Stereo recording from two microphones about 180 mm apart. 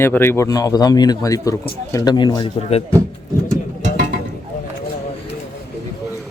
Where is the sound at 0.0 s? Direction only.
10° left (ahead or behind); by 2.8 s 30° left (ahead or behind).